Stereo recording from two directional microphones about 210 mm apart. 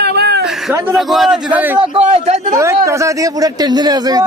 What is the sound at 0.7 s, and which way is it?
A man's voice, 5° right (ahead or behind).